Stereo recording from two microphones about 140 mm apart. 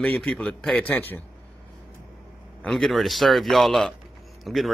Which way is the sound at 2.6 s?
5° left (ahead or behind).